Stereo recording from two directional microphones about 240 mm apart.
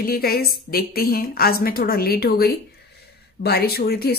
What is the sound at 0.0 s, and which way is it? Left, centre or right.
A woman's voice, left.